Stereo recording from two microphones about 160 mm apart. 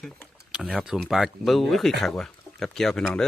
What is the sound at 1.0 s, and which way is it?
Speech, centre (ahead or behind).